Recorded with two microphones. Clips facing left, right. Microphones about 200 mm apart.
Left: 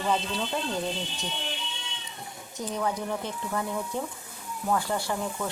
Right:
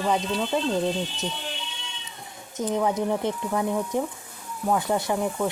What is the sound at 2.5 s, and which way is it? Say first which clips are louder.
Speech: right 6 dB; 20° right (ahead or behind).